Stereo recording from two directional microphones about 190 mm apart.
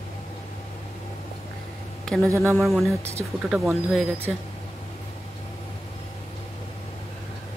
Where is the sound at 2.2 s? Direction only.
15° right (ahead or behind).